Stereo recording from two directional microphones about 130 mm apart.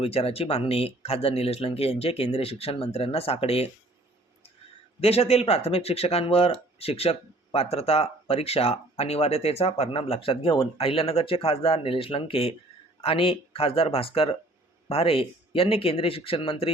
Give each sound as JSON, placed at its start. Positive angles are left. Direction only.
{"t": 0.0, "sound": "speech", "side_deg": 50}
{"t": 4.9, "sound": "speech", "side_deg": 50}